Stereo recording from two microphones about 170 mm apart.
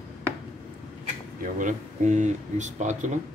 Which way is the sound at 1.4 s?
50° right (ahead or behind).